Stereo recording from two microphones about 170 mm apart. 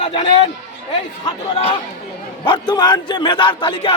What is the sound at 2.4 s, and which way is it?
Speech, 25° left (ahead or behind).